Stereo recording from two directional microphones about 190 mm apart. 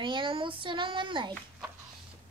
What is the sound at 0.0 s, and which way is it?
Child singing, 25° right (ahead or behind).